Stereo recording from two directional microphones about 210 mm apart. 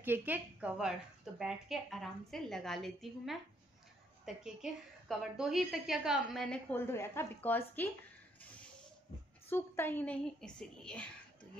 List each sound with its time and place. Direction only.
0.0 s a woman's voice: 10° right (ahead or behind); by 7.9 s 10° left (ahead or behind)
9.5 s a woman's voice: 10° left (ahead or behind)